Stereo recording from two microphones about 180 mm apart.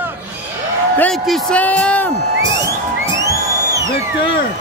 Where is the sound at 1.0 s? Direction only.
5° left (ahead or behind).